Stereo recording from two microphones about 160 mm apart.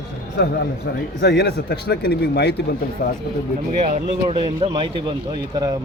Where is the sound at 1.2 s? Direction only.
90° left.